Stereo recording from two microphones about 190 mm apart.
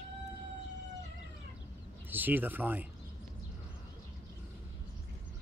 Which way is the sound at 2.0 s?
10° right (ahead or behind).